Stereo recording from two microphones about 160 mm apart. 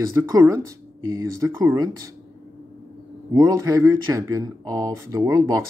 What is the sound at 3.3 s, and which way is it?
Speech, 20° right (ahead or behind).